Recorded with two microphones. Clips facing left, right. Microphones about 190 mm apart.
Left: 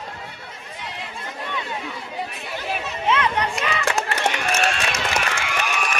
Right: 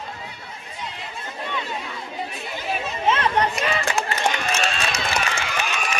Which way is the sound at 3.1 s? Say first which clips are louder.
Right 1 dB; 35° right (ahead or behind).